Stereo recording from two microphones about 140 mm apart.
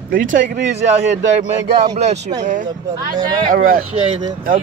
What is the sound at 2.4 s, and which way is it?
Speech, 70° right (ahead or behind).